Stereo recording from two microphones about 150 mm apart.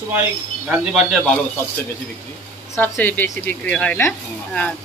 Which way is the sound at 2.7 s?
15° left (ahead or behind).